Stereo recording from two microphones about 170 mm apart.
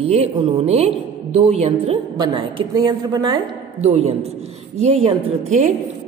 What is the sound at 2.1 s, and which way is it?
A woman's voice, 25° right (ahead or behind).